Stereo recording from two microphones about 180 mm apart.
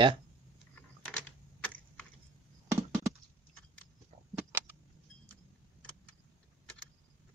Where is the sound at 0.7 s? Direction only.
10° left (ahead or behind).